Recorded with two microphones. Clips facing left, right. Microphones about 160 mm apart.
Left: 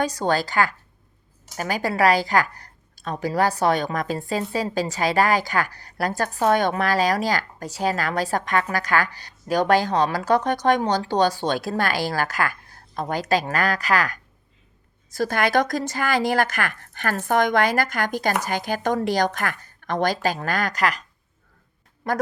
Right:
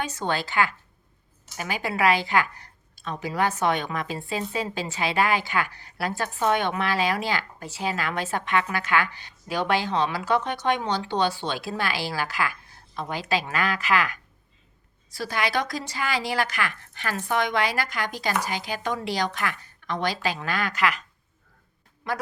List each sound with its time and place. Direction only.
0.0 s a woman's voice: 35° left (ahead or behind)
15.1 s a woman's voice: 50° left (ahead or behind)
22.0 s a woman's voice: 45° left (ahead or behind)